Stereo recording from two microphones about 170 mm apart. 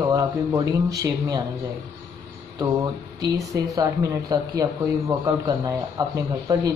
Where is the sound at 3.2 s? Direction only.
20° right (ahead or behind).